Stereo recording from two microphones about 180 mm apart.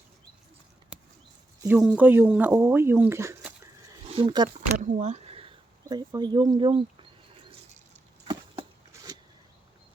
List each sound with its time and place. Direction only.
1.6 s speech: 10° right (ahead or behind)
4.1 s speech: 25° right (ahead or behind)
4.8 s speech: 45° right (ahead or behind); by 6.8 s 25° right (ahead or behind)